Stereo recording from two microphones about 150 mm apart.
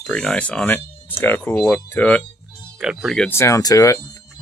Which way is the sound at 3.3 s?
20° left (ahead or behind).